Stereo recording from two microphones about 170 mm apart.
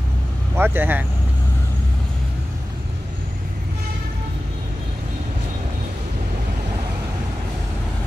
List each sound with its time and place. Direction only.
0.6 s speech: 10° right (ahead or behind)